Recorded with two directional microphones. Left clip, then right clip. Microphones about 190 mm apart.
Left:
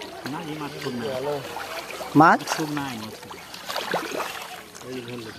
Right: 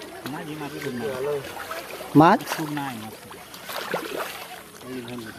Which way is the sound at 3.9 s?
35° left (ahead or behind).